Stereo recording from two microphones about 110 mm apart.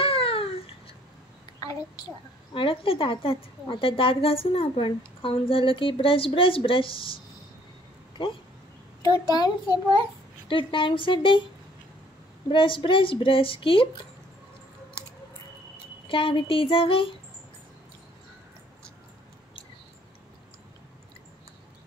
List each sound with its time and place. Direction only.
0.0 s babbling: 60° left (ahead or behind)
2.5 s a woman's voice: 50° left (ahead or behind)
9.0 s a child's voice: 35° left (ahead or behind)
10.5 s a woman's voice: 50° left (ahead or behind)
12.4 s a woman's voice: 50° left (ahead or behind)
16.1 s a woman's voice: 50° left (ahead or behind)